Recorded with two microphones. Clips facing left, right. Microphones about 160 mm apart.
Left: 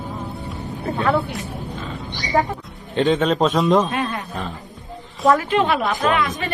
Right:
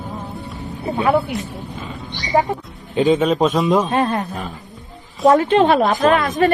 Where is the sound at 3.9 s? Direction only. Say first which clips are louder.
Right 6 dB; 40° right (ahead or behind).